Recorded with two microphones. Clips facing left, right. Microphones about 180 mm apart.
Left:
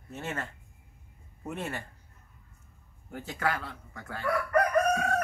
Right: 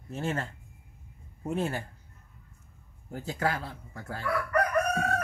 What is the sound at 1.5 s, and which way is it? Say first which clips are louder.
Speech: right 5 dB; 30° right (ahead or behind).